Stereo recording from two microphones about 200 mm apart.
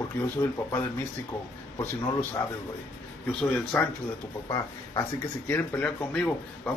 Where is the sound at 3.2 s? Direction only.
5° left (ahead or behind).